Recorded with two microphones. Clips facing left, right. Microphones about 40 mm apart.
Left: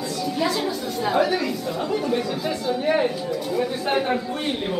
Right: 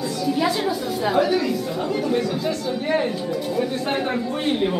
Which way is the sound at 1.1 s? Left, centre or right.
Centre.